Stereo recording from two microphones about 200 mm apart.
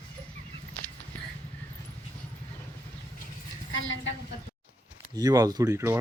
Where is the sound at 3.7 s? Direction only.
75° left (ahead or behind).